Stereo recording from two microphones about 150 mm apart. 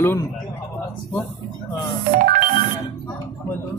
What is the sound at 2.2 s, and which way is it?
Music, 65° right (ahead or behind).